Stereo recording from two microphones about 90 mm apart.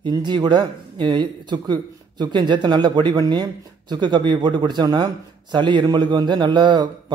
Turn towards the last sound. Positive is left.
turn(degrees=-60)  # may be behind; listen again after turning